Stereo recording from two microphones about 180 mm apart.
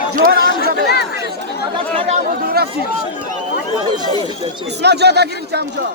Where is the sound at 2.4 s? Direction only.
55° right (ahead or behind).